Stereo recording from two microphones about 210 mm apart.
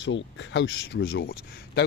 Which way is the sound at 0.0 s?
60° left (ahead or behind).